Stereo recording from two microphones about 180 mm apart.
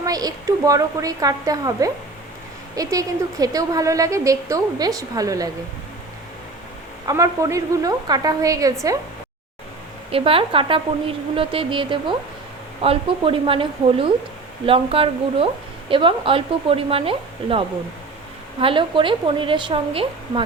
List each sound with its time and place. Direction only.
0.0 s a woman's voice: 20° right (ahead or behind)
7.1 s a woman's voice: 20° right (ahead or behind)
10.1 s a woman's voice: 30° right (ahead or behind)
18.6 s a woman's voice: 30° right (ahead or behind)